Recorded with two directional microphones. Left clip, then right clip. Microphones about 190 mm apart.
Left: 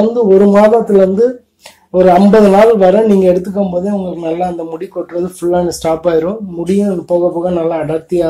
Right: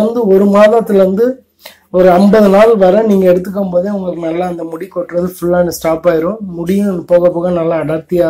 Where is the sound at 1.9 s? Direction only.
20° right (ahead or behind).